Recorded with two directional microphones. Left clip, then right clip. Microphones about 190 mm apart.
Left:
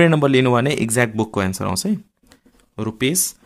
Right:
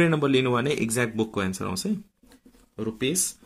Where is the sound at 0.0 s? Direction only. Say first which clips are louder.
Left 7 dB; 35° left (ahead or behind).